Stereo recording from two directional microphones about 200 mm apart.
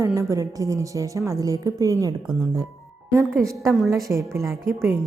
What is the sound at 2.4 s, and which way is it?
A woman's voice, 20° right (ahead or behind).